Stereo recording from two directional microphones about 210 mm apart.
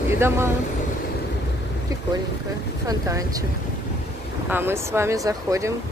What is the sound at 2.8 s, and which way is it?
Speech, 15° right (ahead or behind).